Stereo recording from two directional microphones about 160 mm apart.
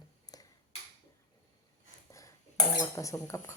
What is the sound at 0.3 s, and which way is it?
Finger snapping, 25° left (ahead or behind).